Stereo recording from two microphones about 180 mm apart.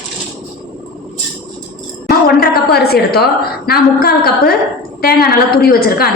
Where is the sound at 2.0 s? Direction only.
60° left (ahead or behind).